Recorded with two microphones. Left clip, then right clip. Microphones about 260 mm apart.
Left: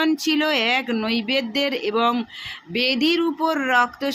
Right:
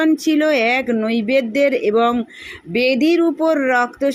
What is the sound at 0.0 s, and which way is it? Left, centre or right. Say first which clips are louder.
Speech: right 5 dB; centre.